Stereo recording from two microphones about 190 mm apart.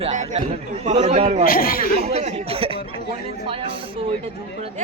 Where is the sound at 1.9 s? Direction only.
35° right (ahead or behind).